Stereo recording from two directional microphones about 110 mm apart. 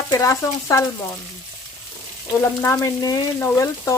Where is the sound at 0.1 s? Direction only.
30° left (ahead or behind).